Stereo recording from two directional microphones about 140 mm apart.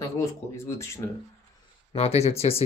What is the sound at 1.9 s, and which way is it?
Speech, 45° left (ahead or behind).